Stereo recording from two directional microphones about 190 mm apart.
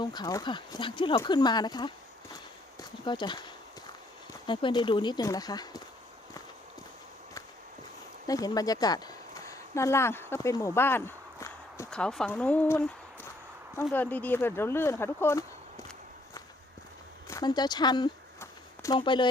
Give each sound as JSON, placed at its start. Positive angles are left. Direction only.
{"t": 0.0, "sound": "speech", "side_deg": 20}
{"t": 3.0, "sound": "speech", "side_deg": 25}
{"t": 8.3, "sound": "speech", "side_deg": 20}
{"t": 13.9, "sound": "speech", "side_deg": 10}
{"t": 17.2, "sound": "a sound", "side_deg": 20}